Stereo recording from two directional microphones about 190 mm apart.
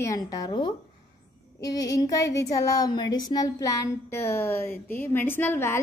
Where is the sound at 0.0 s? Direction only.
20° left (ahead or behind).